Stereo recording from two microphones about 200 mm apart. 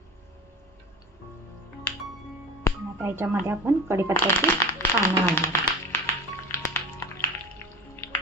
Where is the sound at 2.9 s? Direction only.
10° right (ahead or behind).